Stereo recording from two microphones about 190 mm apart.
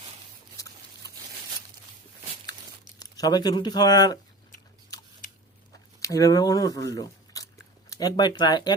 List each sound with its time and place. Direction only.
3.0 s speech: 20° left (ahead or behind)
6.0 s speech: 15° left (ahead or behind)